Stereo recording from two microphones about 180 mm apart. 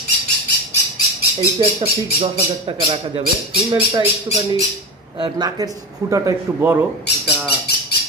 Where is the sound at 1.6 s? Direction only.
35° right (ahead or behind).